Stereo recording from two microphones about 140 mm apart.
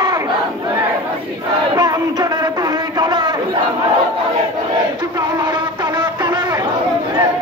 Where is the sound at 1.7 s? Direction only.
30° right (ahead or behind).